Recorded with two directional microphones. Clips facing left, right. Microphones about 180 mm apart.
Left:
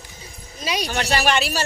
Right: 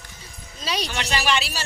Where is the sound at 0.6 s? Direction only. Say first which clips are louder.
Left 2 dB; 15° left (ahead or behind).